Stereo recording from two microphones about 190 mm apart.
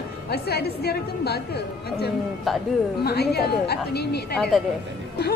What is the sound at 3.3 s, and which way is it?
A woman's voice, 55° left (ahead or behind).